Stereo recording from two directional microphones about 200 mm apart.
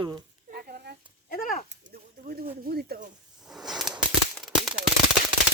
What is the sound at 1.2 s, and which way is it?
Speech, 45° left (ahead or behind).